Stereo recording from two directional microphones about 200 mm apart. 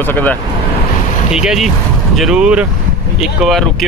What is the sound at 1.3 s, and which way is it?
Speech, centre (ahead or behind).